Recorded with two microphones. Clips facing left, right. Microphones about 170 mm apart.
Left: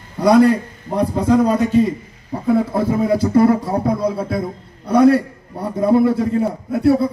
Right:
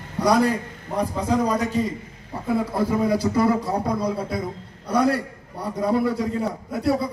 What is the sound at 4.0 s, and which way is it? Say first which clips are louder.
A man's voice: left 5 dB; 55° left (ahead or behind).